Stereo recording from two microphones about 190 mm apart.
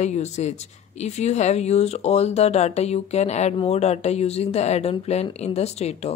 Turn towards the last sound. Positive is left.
turn(degrees=35)  # may be behind; listen again after turning